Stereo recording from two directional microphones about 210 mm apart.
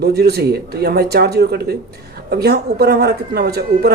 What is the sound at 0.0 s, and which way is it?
A woman's voice, 50° right (ahead or behind).